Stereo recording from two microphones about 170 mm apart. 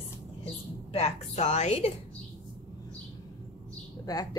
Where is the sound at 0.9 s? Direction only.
40° left (ahead or behind).